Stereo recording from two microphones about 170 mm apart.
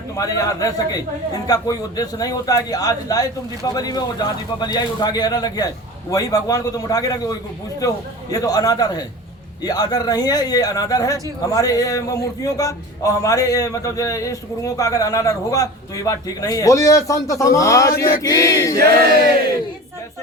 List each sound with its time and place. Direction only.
0.2 s speech: 20° left (ahead or behind)